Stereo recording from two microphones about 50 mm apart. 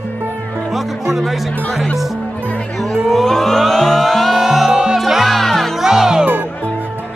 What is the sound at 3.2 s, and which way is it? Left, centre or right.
Music, centre.